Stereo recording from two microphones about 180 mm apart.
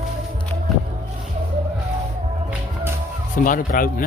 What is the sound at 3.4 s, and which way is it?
Speech, 50° left (ahead or behind).